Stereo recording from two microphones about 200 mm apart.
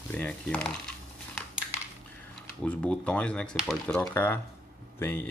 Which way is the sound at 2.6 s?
5° left (ahead or behind).